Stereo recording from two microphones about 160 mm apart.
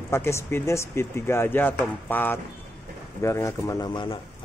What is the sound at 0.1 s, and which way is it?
A man's voice, 15° left (ahead or behind).